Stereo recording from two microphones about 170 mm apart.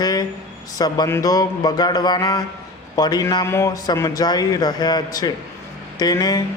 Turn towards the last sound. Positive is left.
turn(degrees=20)  # may be behind; listen again after turning